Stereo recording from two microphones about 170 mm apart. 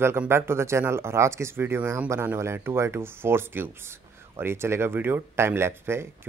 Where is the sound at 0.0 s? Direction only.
15° right (ahead or behind).